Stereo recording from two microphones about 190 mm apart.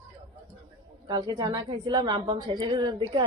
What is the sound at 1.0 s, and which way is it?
A woman's voice, 20° right (ahead or behind).